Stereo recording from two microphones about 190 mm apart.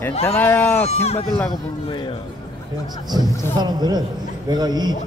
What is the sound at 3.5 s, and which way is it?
A man's voice, 20° right (ahead or behind).